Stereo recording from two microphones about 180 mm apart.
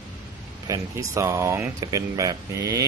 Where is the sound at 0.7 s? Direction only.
15° right (ahead or behind).